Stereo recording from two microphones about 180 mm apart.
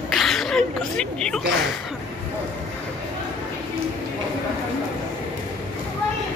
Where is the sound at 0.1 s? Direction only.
Centre (ahead or behind).